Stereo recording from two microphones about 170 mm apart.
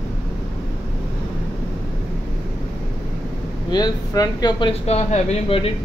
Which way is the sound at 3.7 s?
25° left (ahead or behind).